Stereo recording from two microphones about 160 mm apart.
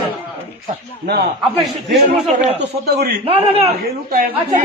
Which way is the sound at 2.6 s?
90° right.